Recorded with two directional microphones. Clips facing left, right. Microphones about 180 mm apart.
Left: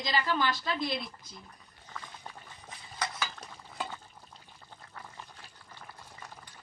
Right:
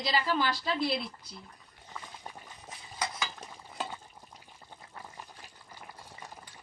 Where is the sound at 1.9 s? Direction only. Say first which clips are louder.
Right 1 dB; 10° right (ahead or behind).